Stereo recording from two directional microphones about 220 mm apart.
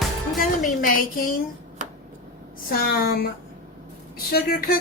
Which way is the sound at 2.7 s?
40° left (ahead or behind).